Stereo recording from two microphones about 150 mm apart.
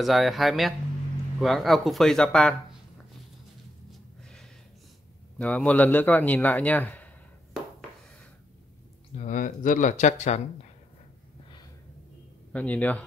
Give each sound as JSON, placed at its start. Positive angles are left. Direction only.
{"t": 0.0, "sound": "speech", "side_deg": 0}
{"t": 5.4, "sound": "a man's voice", "side_deg": 10}
{"t": 9.1, "sound": "speech", "side_deg": 60}
{"t": 12.5, "sound": "a man's voice", "side_deg": 10}